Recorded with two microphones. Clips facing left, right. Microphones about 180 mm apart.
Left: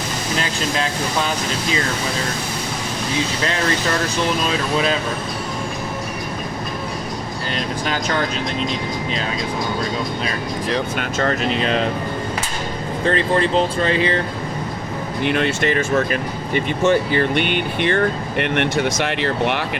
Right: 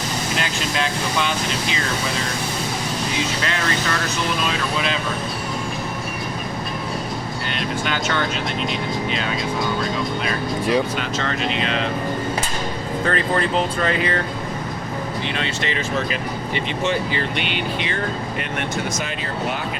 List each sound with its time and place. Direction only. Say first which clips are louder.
7.9 s speech: left 2 dB; 35° left (ahead or behind)
10.9 s speech: left 4 dB; 45° left (ahead or behind)
13.1 s speech: left 4 dB; 30° left (ahead or behind)
15.2 s speech: left 11 dB; 55° left (ahead or behind); by 19.6 s 75° left (ahead or behind)